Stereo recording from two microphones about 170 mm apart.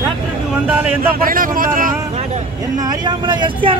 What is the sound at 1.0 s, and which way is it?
Speech, 55° right (ahead or behind).